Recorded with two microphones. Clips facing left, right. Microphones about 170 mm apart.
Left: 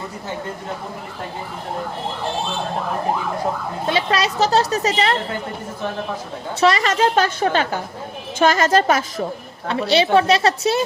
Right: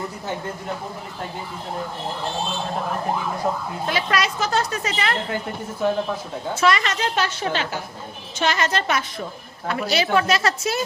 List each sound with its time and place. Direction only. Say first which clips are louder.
3.8 s speech: left 3 dB; 30° left (ahead or behind)
6.6 s speech: left 4 dB; 35° left (ahead or behind)
7.0 s a woman's voice: left 7 dB; 50° left (ahead or behind)
9.6 s a woman's voice: left 5 dB; 30° left (ahead or behind)